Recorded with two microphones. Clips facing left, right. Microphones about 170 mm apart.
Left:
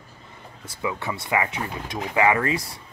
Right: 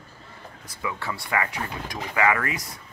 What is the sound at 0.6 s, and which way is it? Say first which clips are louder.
Speech: left 3 dB; 25° left (ahead or behind).